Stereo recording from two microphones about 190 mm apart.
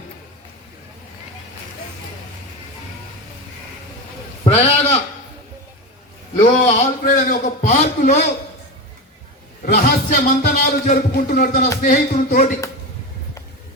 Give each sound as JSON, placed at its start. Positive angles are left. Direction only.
{"t": 4.4, "sound": "a man's voice", "side_deg": 30}
{"t": 6.5, "sound": "a man's voice", "side_deg": 40}
{"t": 9.8, "sound": "speech", "side_deg": 50}